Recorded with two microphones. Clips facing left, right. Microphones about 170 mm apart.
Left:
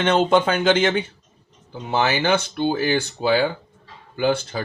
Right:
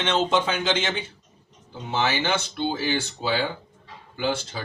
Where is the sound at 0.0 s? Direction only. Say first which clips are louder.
Left 5 dB; 55° left (ahead or behind).